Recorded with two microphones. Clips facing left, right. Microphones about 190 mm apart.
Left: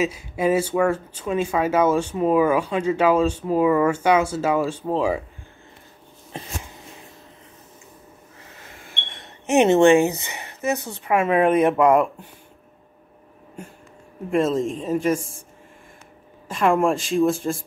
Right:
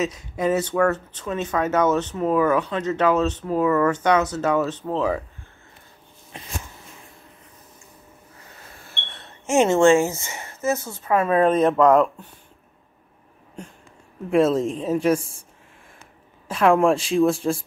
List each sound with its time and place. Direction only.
0.0 s speech: 10° left (ahead or behind)
8.9 s speech: 10° left (ahead or behind)
14.3 s speech: centre (ahead or behind)
16.4 s speech: centre (ahead or behind)